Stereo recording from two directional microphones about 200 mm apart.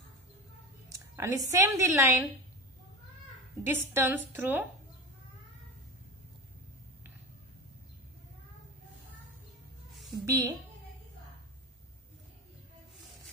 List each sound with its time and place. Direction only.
0.9 s a woman's voice: 15° right (ahead or behind)
3.6 s a woman's voice: 10° right (ahead or behind)
9.9 s a sound: centre (ahead or behind)
10.2 s a woman's voice: 15° right (ahead or behind)